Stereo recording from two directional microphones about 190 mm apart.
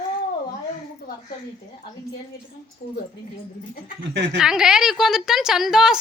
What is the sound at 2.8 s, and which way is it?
Speech, 55° left (ahead or behind).